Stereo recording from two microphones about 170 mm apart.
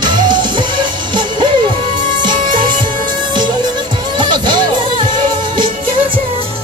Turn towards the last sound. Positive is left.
turn(degrees=-30)  # may be behind; listen again after turning